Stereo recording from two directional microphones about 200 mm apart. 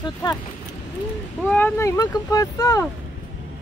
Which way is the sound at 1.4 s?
10° left (ahead or behind).